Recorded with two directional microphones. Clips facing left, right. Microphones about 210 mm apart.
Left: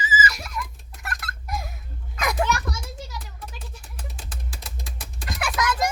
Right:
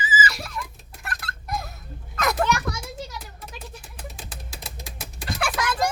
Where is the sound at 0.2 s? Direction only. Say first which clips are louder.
Even; 30° right (ahead or behind).